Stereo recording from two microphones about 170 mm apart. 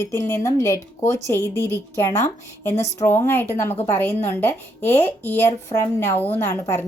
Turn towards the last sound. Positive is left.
turn(degrees=15)  # may be behind; listen again after turning